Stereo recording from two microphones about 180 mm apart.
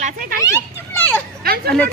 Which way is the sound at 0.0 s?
50° right (ahead or behind).